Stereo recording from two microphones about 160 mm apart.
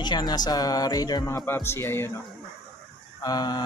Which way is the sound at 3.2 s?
25° left (ahead or behind).